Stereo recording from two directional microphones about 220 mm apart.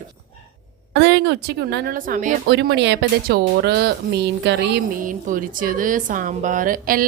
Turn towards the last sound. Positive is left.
turn(degrees=-40)  # may be behind; listen again after turning